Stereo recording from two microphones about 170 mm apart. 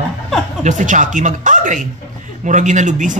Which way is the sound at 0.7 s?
45° right (ahead or behind).